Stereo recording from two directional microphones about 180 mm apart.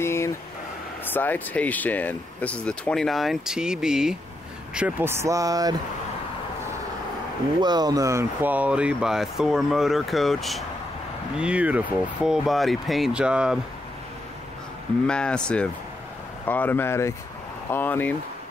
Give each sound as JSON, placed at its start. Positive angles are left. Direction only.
{"t": 0.0, "sound": "a sound", "side_deg": 15}
{"t": 1.1, "sound": "speech", "side_deg": 10}
{"t": 7.6, "sound": "speech", "side_deg": -20}
{"t": 15.0, "sound": "speech", "side_deg": 5}